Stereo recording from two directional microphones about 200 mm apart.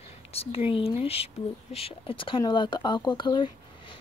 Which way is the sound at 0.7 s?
30° left (ahead or behind).